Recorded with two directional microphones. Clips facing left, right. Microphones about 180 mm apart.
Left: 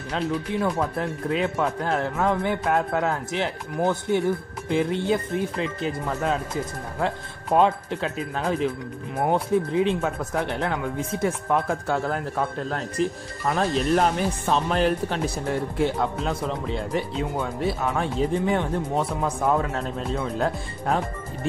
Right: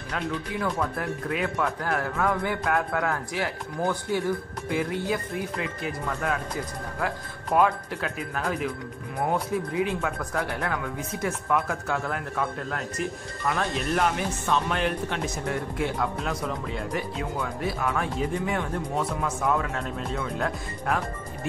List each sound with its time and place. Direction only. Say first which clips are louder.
0.1 s speech: left 4 dB; 25° left (ahead or behind)